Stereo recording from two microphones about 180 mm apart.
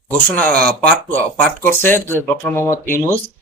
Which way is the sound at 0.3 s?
5° left (ahead or behind).